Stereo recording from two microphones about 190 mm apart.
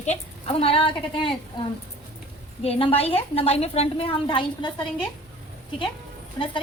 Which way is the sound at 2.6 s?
30° left (ahead or behind).